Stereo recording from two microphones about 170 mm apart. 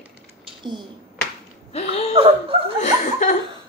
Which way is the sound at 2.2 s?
35° right (ahead or behind).